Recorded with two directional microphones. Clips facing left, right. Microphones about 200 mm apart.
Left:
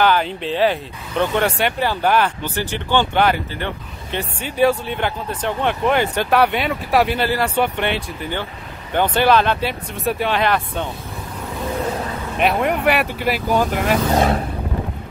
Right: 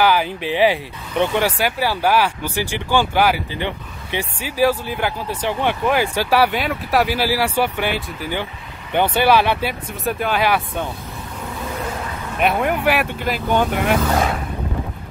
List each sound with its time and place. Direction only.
0.0 s speech: 10° right (ahead or behind)
12.4 s speech: centre (ahead or behind)
14.1 s speech: 35° left (ahead or behind)